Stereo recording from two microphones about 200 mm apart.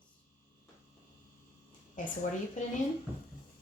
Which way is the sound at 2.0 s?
40° left (ahead or behind).